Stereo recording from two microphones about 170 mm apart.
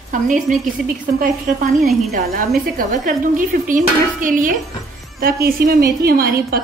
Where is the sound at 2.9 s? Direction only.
50° right (ahead or behind).